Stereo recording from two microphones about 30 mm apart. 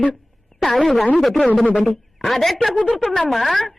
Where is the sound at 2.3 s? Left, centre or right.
Centre.